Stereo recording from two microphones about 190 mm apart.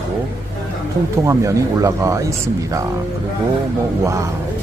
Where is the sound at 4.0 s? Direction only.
15° right (ahead or behind).